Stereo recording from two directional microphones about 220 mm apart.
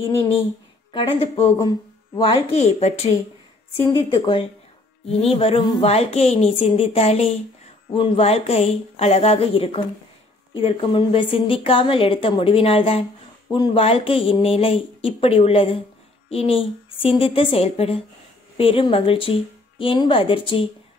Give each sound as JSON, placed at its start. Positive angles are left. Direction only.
{"t": 0.9, "sound": "a woman's voice", "side_deg": 25}